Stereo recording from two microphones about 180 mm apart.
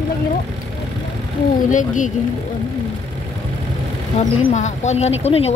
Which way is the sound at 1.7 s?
45° left (ahead or behind).